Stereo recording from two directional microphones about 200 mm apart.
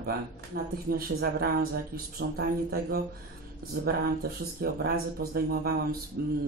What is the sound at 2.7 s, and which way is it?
Speech, 50° right (ahead or behind).